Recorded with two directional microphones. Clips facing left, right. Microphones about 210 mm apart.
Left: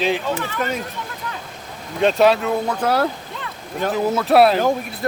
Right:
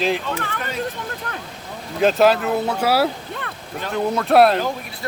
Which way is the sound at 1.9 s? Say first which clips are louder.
Even; centre (ahead or behind).